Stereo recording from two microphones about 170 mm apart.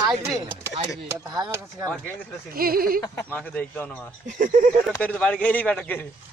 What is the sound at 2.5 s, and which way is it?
Speech, 60° right (ahead or behind).